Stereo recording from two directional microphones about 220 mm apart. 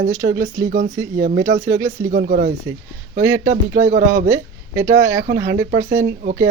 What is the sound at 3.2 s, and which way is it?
Speech, 10° right (ahead or behind).